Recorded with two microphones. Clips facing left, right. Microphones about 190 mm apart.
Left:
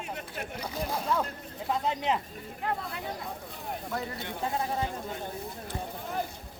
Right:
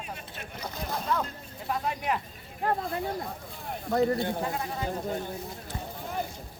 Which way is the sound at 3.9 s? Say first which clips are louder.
Right 13 dB; 40° right (ahead or behind).